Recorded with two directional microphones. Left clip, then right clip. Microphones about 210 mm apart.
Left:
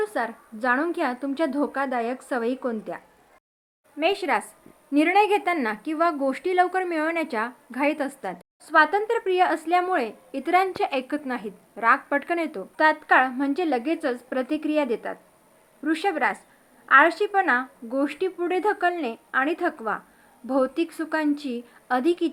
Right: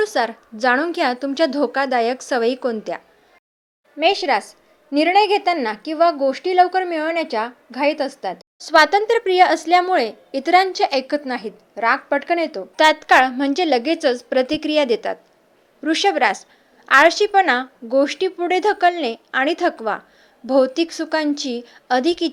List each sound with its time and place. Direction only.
0.0 s speech: 35° right (ahead or behind)
3.9 s a woman's voice: 10° right (ahead or behind)
8.6 s a woman's voice: 30° right (ahead or behind); by 12.6 s 10° right (ahead or behind)
12.7 s a woman's voice: 35° right (ahead or behind)